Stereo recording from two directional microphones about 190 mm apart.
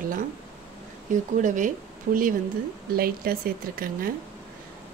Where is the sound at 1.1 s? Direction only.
45° right (ahead or behind).